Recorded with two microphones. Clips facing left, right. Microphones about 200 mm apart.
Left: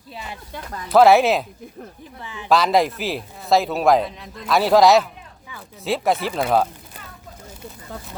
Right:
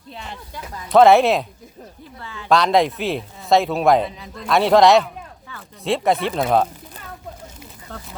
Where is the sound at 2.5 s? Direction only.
Centre (ahead or behind).